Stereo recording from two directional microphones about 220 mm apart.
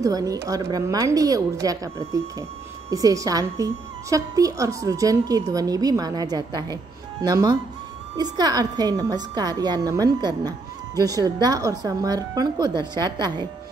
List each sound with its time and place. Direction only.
0.0 s a woman's voice: 15° right (ahead or behind)